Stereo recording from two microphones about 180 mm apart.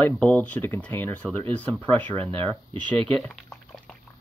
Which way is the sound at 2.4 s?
10° left (ahead or behind).